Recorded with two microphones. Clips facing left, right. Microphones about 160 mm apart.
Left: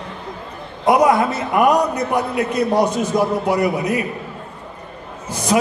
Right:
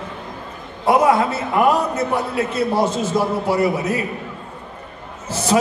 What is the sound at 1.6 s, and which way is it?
A man's voice, 15° left (ahead or behind).